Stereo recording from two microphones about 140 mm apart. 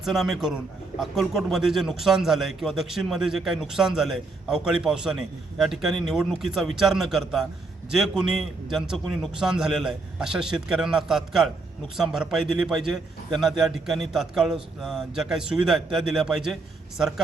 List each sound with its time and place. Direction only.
0.0 s a man's voice: centre (ahead or behind)